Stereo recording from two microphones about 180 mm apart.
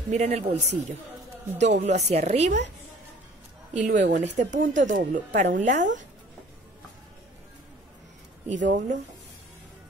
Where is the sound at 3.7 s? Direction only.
45° right (ahead or behind).